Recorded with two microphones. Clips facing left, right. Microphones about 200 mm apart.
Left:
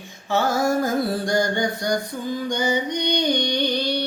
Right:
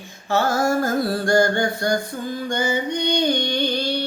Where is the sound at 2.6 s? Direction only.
15° left (ahead or behind).